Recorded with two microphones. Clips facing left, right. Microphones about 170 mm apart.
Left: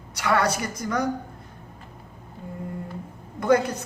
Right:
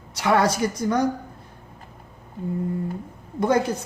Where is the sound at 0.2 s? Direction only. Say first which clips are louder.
Right 3 dB; 25° right (ahead or behind).